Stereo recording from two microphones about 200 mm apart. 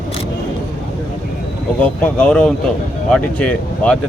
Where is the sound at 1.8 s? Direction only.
5° left (ahead or behind).